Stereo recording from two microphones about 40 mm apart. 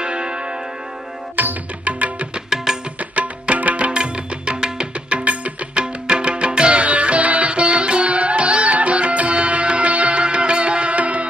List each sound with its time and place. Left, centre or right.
0.0 s tick-tock: right
1.3 s music: right
1.9 s music: right
2.5 s music: centre
3.0 s music: right
3.9 s music: right
4.9 s music: right